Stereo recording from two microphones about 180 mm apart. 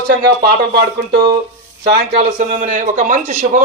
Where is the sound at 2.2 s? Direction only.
40° right (ahead or behind).